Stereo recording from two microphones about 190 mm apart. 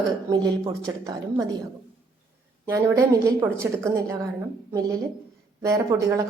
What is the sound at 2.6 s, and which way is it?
A woman's voice, 15° right (ahead or behind).